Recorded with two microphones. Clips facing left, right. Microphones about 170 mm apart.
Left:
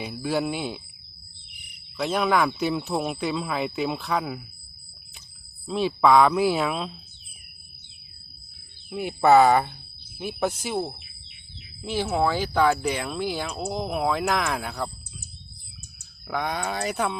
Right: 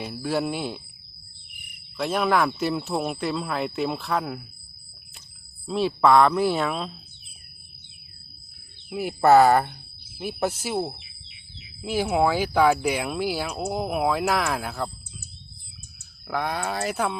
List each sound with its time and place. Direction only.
0.0 s speech: centre (ahead or behind)
1.5 s a sound: 55° right (ahead or behind)
2.0 s speech: centre (ahead or behind)
5.6 s speech: centre (ahead or behind)
9.0 s speech: centre (ahead or behind)
11.0 s bird: 50° left (ahead or behind)
11.8 s speech: 10° right (ahead or behind)
16.2 s speech: centre (ahead or behind)